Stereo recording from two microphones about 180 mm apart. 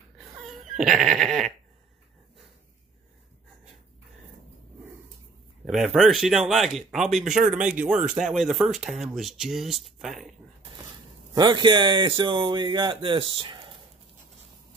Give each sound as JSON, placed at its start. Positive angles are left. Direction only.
{"t": 0.2, "sound": "a sound", "side_deg": 0}
{"t": 5.7, "sound": "speech", "side_deg": -5}
{"t": 11.3, "sound": "speech", "side_deg": -25}